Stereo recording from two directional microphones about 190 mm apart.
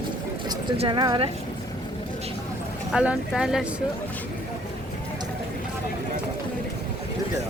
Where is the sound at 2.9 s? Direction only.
5° right (ahead or behind).